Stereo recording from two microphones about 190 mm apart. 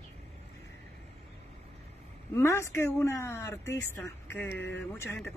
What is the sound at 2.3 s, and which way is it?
Speech, 15° left (ahead or behind).